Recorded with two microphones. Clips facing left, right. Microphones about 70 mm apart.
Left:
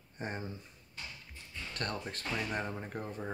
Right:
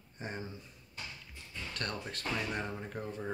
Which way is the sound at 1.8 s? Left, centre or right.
Left.